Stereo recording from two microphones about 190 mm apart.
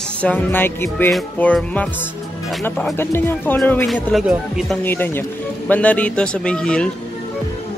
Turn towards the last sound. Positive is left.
turn(degrees=5)  # may be behind; listen again after turning